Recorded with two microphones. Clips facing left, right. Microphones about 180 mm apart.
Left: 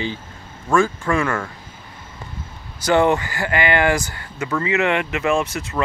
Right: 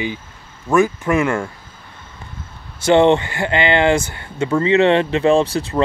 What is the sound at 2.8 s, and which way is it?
Speech, 25° right (ahead or behind).